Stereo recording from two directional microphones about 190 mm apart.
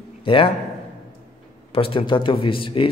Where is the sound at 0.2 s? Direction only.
25° left (ahead or behind).